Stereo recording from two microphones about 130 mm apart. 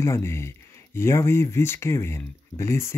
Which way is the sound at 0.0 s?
20° left (ahead or behind).